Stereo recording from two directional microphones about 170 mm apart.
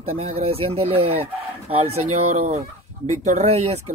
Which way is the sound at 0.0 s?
35° right (ahead or behind).